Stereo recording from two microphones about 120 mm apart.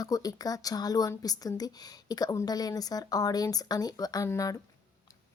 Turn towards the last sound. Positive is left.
turn(degrees=30)  # may be behind; listen again after turning